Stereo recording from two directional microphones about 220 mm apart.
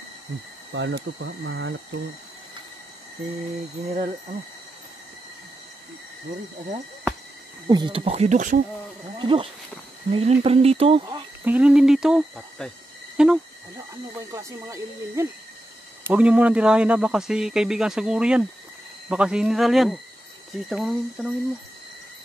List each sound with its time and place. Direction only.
0.7 s speech: 55° right (ahead or behind)
7.6 s speech: 20° right (ahead or behind); by 8.6 s 35° right (ahead or behind)
9.2 s speech: 25° right (ahead or behind)
11.4 s speech: 5° right (ahead or behind)
13.2 s a sound: 5° right (ahead or behind)
14.3 s speech: 15° right (ahead or behind)